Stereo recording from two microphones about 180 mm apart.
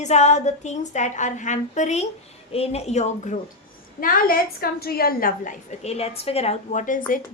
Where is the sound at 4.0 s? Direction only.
50° left (ahead or behind).